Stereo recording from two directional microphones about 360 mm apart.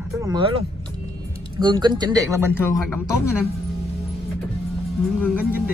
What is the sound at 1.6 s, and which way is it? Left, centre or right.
Speech, centre.